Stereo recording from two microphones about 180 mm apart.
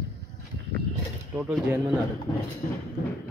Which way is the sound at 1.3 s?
5° right (ahead or behind).